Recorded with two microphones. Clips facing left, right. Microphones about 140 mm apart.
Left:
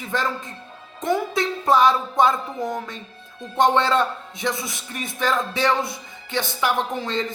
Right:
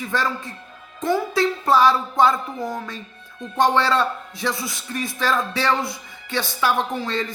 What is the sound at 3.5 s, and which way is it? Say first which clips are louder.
A man's voice: even; 20° left (ahead or behind).